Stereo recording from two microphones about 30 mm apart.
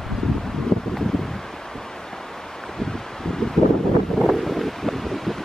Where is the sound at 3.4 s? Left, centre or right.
Left.